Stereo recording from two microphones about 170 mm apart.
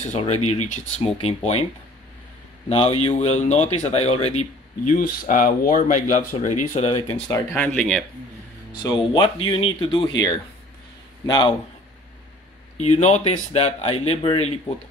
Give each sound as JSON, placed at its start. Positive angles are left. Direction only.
{"t": 0.2, "sound": "speech", "side_deg": 40}
{"t": 2.7, "sound": "speech", "side_deg": 35}
{"t": 4.9, "sound": "speech", "side_deg": 60}
{"t": 7.1, "sound": "speech", "side_deg": 20}
{"t": 8.8, "sound": "speech", "side_deg": 25}
{"t": 11.2, "sound": "speech", "side_deg": 25}
{"t": 12.7, "sound": "speech", "side_deg": 40}